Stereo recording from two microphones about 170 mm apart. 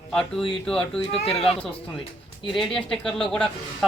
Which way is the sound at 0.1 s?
5° left (ahead or behind).